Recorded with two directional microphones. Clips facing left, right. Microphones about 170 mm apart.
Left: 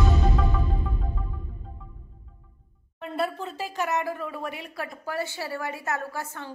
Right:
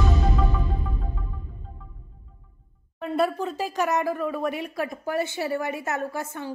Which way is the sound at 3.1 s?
15° right (ahead or behind).